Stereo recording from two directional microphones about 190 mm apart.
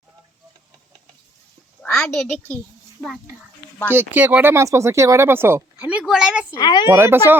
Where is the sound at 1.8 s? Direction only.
5° left (ahead or behind).